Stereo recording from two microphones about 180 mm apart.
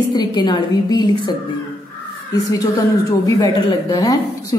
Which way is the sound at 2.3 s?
20° left (ahead or behind).